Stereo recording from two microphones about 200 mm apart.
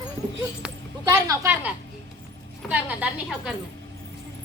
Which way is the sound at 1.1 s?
10° right (ahead or behind).